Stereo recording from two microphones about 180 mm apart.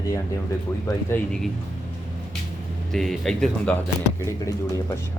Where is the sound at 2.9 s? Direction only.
Centre (ahead or behind).